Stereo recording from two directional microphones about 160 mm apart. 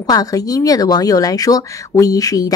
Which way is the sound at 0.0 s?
20° left (ahead or behind).